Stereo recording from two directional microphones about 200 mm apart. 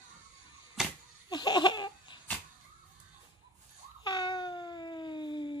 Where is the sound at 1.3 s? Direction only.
20° left (ahead or behind).